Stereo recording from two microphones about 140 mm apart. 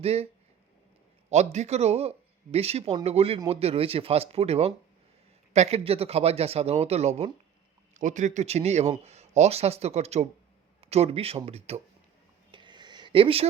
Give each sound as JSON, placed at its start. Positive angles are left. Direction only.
{"t": 0.0, "sound": "speech", "side_deg": -45}
{"t": 1.3, "sound": "speech", "side_deg": -50}
{"t": 7.9, "sound": "speech", "side_deg": -60}
{"t": 12.5, "sound": "a sound", "side_deg": -35}